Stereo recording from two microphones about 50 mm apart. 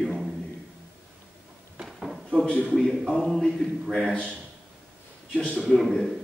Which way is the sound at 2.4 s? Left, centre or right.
Centre.